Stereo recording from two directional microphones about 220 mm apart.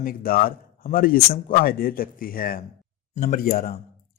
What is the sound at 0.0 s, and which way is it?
Speech, 40° left (ahead or behind).